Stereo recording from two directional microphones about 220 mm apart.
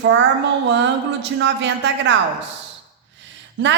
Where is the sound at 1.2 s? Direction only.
55° right (ahead or behind).